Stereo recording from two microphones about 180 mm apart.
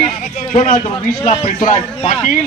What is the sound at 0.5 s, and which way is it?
Speech, 45° left (ahead or behind).